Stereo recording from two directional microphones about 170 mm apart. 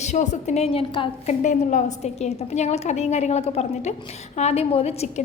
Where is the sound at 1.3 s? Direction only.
45° left (ahead or behind).